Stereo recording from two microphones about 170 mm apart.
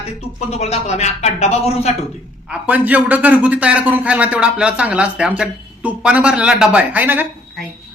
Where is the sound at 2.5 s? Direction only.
10° right (ahead or behind).